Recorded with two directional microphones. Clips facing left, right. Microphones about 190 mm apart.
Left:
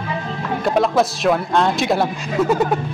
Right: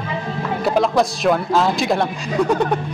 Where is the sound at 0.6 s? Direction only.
Centre (ahead or behind).